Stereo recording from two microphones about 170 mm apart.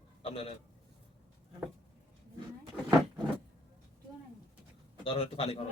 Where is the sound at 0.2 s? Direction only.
35° left (ahead or behind).